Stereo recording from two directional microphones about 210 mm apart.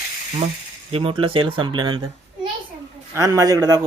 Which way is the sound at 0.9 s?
25° right (ahead or behind).